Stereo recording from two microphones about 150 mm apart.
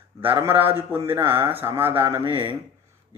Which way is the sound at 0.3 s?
15° right (ahead or behind).